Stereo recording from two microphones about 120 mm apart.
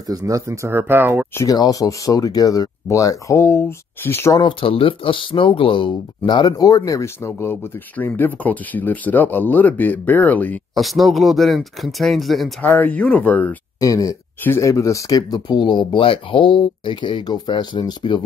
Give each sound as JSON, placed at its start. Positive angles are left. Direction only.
{"t": 0.0, "sound": "speech", "side_deg": -30}
{"t": 1.3, "sound": "speech", "side_deg": 25}
{"t": 4.4, "sound": "speech", "side_deg": 45}
{"t": 10.7, "sound": "speech", "side_deg": 0}
{"t": 12.6, "sound": "speech", "side_deg": 15}
{"t": 13.7, "sound": "speech", "side_deg": 30}